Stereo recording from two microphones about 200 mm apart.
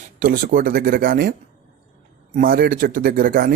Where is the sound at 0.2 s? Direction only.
45° right (ahead or behind).